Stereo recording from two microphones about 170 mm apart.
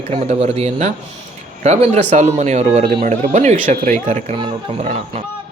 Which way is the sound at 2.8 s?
65° right (ahead or behind).